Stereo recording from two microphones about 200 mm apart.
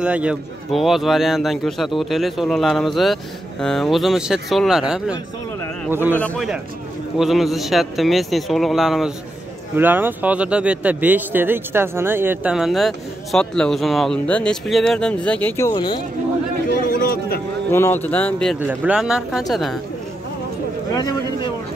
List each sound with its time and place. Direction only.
0.0 s a man's voice: 5° right (ahead or behind)
6.1 s speech: 5° left (ahead or behind); by 16.0 s 20° left (ahead or behind)
16.8 s a sound: 50° left (ahead or behind)
17.6 s speech: 10° left (ahead or behind)
18.6 s speech: 10° right (ahead or behind)
20.9 s speech: 20° left (ahead or behind)